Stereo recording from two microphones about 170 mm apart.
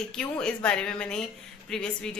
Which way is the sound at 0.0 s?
5° left (ahead or behind).